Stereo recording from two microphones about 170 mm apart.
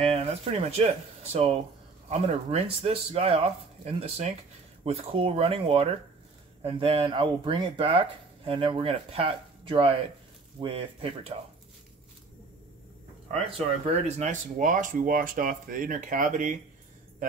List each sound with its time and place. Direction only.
0.0 s speech: 35° right (ahead or behind)
14.0 s speech: 40° right (ahead or behind)